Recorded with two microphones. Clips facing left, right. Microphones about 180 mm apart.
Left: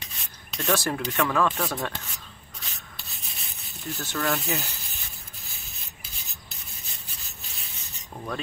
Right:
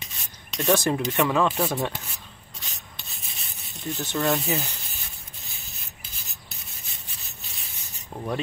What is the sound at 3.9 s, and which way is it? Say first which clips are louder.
Speech: right 3 dB; 20° right (ahead or behind).